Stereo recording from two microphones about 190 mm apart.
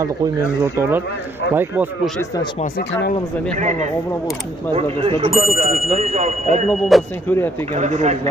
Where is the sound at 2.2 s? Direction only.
20° left (ahead or behind).